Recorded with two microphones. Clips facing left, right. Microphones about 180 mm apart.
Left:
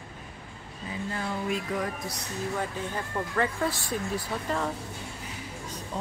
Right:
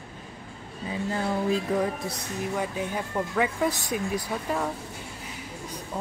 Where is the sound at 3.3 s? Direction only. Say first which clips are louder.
Right 2 dB; 10° right (ahead or behind).